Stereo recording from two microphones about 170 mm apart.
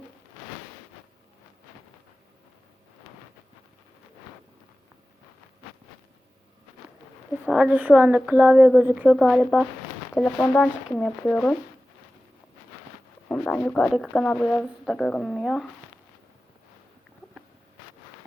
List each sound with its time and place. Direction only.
7.4 s a woman's voice: 5° right (ahead or behind)
13.2 s speech: 5° left (ahead or behind)